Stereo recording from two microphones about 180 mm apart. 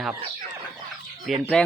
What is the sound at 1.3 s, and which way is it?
Speech, centre (ahead or behind).